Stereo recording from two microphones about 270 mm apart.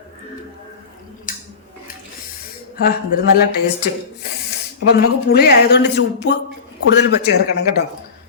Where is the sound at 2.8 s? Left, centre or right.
Left.